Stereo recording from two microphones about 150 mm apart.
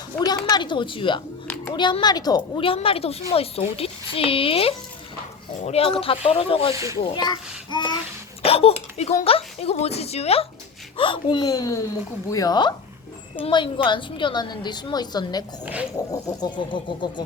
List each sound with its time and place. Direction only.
0.3 s a woman's voice: 25° left (ahead or behind)
8.4 s a child's voice: 40° left (ahead or behind)
15.6 s speech: 10° right (ahead or behind)
16.4 s a woman's voice: 30° left (ahead or behind)